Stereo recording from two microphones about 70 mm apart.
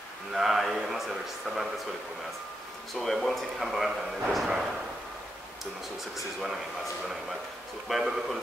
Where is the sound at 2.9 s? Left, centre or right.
Centre.